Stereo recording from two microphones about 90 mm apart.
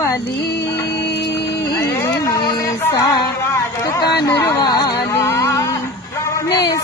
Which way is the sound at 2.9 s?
45° left (ahead or behind).